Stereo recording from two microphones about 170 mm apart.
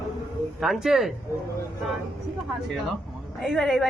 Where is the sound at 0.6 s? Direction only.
Centre (ahead or behind).